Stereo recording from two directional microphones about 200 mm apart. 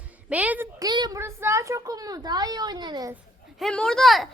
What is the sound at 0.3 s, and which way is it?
A child's voice, 5° right (ahead or behind).